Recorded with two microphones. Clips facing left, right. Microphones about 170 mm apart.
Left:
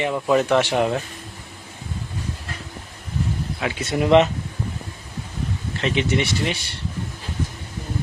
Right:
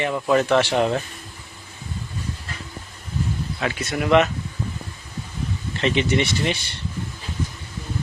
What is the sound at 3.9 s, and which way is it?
Speech, 30° left (ahead or behind).